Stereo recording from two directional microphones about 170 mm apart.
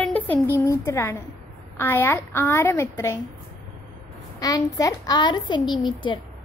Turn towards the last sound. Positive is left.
turn(degrees=25)  # may be behind; listen again after turning